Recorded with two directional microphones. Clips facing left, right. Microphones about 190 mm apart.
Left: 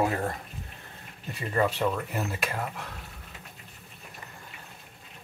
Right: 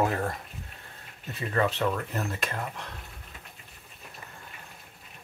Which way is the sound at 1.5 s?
10° left (ahead or behind).